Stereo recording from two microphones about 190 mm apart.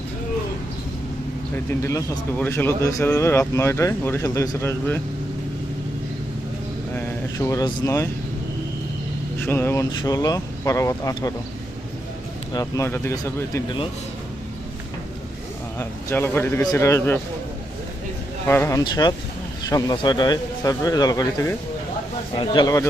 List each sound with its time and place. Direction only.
1.5 s a man's voice: 15° left (ahead or behind)
6.9 s speech: 15° left (ahead or behind)
9.4 s a man's voice: 10° left (ahead or behind)
12.5 s a man's voice: 15° left (ahead or behind)
15.8 s a man's voice: 15° left (ahead or behind)
18.4 s a man's voice: 15° left (ahead or behind)